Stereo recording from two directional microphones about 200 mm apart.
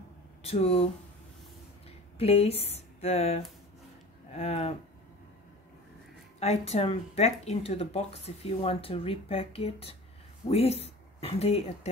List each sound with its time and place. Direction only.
0.4 s speech: 30° left (ahead or behind)
1.9 s speech: 30° left (ahead or behind)
6.4 s speech: 30° left (ahead or behind)